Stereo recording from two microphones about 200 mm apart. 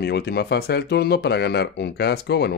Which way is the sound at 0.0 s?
55° left (ahead or behind).